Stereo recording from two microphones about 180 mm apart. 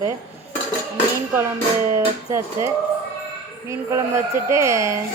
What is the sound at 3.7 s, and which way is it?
A woman's voice, 15° right (ahead or behind).